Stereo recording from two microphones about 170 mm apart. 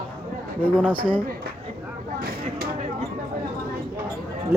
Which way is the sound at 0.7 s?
10° right (ahead or behind).